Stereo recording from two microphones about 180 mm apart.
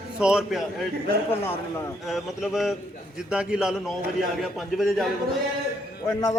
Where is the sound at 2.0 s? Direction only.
Centre (ahead or behind).